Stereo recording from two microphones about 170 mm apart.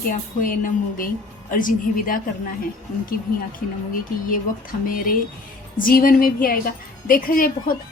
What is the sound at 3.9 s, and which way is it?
Speech, 55° left (ahead or behind).